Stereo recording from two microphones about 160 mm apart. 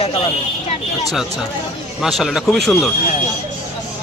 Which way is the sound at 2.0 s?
Centre (ahead or behind).